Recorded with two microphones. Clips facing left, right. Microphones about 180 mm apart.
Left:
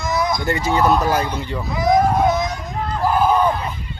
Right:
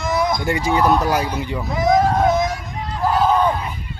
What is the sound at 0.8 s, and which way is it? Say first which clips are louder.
Speech: left 1 dB; centre (ahead or behind).